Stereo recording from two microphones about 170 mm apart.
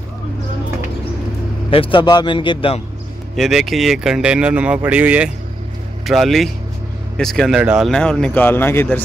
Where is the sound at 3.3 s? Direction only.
Centre (ahead or behind).